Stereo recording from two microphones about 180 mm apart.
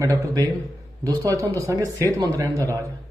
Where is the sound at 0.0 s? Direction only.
15° right (ahead or behind).